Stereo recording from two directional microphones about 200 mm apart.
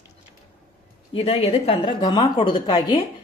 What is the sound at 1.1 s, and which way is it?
Speech, 30° left (ahead or behind).